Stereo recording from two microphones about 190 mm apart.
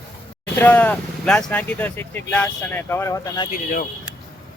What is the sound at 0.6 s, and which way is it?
Speech, 10° left (ahead or behind).